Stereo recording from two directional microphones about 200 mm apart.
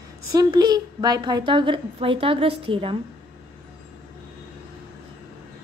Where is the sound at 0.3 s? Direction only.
20° right (ahead or behind).